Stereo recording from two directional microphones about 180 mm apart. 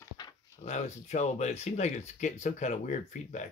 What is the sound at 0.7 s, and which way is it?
Speech, 40° left (ahead or behind).